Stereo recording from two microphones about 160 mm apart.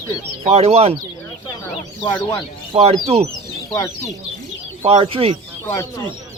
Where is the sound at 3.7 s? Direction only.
20° left (ahead or behind).